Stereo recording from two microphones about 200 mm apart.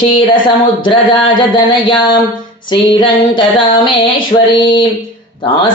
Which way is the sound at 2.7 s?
25° left (ahead or behind).